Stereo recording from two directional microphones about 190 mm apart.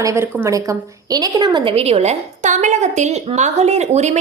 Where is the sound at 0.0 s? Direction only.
15° right (ahead or behind).